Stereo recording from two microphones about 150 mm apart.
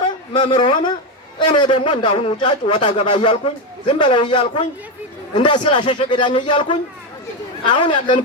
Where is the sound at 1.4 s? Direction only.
30° left (ahead or behind).